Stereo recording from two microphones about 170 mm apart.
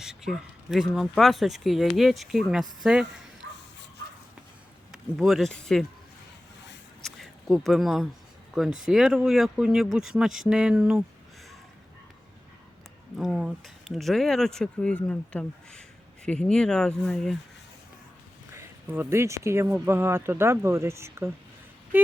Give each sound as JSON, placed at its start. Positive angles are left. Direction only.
{"t": 0.0, "sound": "speech", "side_deg": -5}
{"t": 3.4, "sound": "bow-wow", "side_deg": -90}
{"t": 4.9, "sound": "speech", "side_deg": 0}
{"t": 7.0, "sound": "speech", "side_deg": 0}
{"t": 13.1, "sound": "speech", "side_deg": 0}
{"t": 18.5, "sound": "speech", "side_deg": -15}